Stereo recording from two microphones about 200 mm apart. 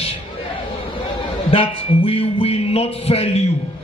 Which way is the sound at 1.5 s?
30° left (ahead or behind).